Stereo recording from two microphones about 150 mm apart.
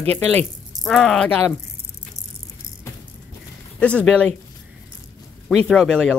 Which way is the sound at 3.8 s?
5° left (ahead or behind).